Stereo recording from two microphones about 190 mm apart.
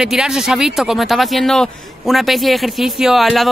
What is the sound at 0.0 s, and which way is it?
Speech, 5° right (ahead or behind).